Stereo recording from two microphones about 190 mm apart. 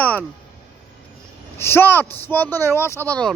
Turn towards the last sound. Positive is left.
turn(degrees=10)  # may be behind; listen again after turning